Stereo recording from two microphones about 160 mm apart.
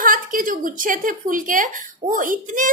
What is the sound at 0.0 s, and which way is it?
Speech, 60° right (ahead or behind).